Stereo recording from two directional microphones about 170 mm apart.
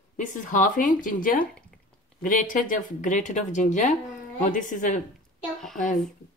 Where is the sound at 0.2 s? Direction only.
50° left (ahead or behind).